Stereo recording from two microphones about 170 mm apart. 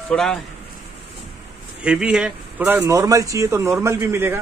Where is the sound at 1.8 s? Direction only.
5° right (ahead or behind).